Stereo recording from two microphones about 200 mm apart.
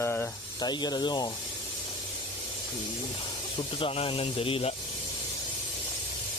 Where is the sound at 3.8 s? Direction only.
25° left (ahead or behind).